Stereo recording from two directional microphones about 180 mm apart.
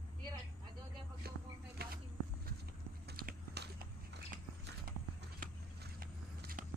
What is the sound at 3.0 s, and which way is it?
Biting, 60° right (ahead or behind).